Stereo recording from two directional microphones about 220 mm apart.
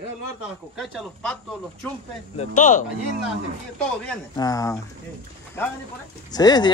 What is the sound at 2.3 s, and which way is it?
Speech, 35° left (ahead or behind).